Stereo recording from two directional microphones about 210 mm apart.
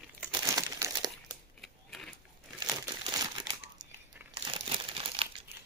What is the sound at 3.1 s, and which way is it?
Crumpling, 20° right (ahead or behind).